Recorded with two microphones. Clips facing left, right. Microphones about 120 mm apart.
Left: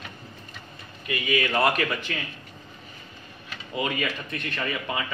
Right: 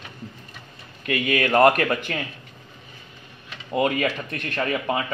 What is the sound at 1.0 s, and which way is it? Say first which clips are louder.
Speech: right 4 dB; 60° right (ahead or behind).